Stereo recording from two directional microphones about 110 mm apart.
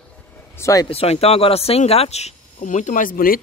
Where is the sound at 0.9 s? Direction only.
65° left (ahead or behind).